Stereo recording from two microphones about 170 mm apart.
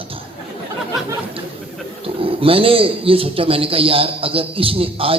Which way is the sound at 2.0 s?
35° right (ahead or behind).